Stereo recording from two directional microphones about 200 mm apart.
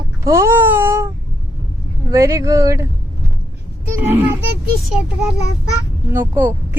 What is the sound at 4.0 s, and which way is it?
Speech, 10° right (ahead or behind).